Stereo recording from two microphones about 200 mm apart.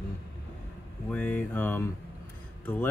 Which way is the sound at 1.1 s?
5° left (ahead or behind).